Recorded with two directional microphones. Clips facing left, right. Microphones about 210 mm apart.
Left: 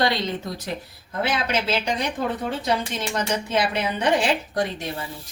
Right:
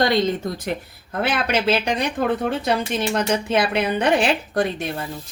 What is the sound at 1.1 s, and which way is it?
Speech, 60° right (ahead or behind).